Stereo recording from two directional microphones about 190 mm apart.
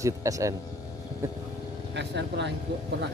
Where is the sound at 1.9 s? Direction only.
65° right (ahead or behind).